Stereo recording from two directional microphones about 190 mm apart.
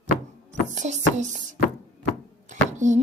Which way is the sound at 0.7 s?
40° right (ahead or behind).